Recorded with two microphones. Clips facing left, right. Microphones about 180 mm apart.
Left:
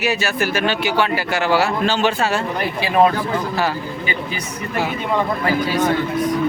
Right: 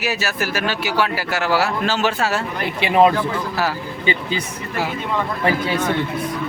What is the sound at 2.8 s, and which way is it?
Speech, 20° right (ahead or behind).